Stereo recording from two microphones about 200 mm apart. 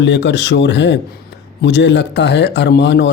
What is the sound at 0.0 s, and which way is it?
A man's voice, 60° left (ahead or behind).